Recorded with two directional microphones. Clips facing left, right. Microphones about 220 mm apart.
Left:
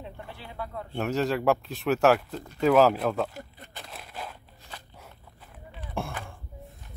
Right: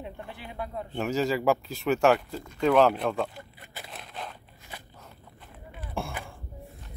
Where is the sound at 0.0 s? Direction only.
15° right (ahead or behind).